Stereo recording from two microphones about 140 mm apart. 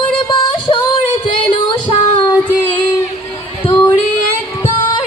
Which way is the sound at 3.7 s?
15° left (ahead or behind).